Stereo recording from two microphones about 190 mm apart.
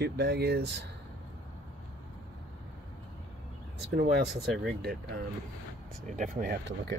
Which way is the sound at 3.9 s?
60° right (ahead or behind).